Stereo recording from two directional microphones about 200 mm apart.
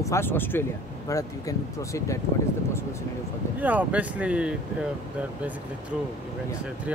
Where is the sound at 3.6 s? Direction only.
10° right (ahead or behind).